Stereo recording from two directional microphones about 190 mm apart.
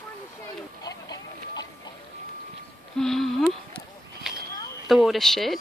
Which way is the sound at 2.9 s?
Centre (ahead or behind).